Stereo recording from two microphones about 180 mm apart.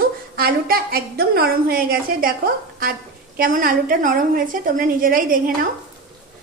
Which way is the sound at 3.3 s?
50° right (ahead or behind).